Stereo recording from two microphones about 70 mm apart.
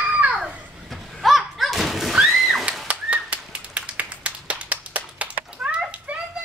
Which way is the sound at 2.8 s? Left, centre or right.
Centre.